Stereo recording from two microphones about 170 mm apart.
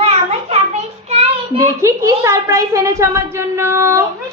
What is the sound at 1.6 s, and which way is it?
A woman's voice, 15° right (ahead or behind).